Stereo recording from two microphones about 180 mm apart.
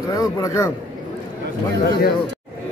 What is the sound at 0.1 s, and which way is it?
Speech, 20° left (ahead or behind).